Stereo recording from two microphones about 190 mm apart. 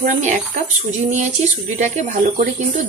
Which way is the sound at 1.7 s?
40° right (ahead or behind).